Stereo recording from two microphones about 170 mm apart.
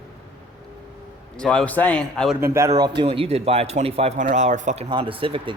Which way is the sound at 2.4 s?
15° right (ahead or behind).